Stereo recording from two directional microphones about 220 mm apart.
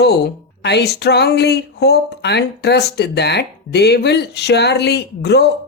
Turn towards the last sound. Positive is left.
turn(degrees=50)  # may be behind; listen again after turning